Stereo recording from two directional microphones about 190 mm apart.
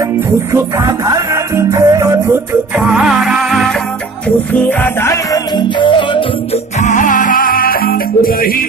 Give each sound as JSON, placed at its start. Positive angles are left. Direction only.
{"t": 0.5, "sound": "music", "side_deg": -15}
{"t": 2.8, "sound": "music", "side_deg": -5}
{"t": 6.8, "sound": "music", "side_deg": 40}